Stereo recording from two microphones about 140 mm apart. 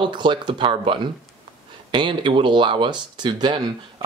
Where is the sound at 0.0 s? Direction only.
35° right (ahead or behind).